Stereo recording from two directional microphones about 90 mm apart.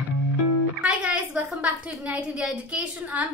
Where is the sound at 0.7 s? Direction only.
10° right (ahead or behind).